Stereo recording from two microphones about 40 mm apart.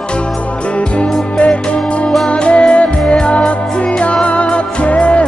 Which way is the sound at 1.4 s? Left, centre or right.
Left.